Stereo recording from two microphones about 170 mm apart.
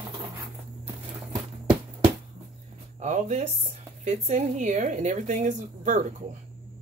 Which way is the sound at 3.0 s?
45° right (ahead or behind).